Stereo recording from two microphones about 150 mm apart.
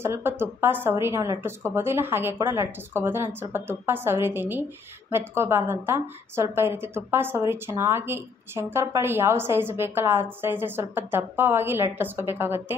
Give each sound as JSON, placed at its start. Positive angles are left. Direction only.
{"t": 0.0, "sound": "a woman's voice", "side_deg": -15}